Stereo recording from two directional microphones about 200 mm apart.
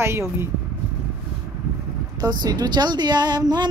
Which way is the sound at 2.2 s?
20° right (ahead or behind).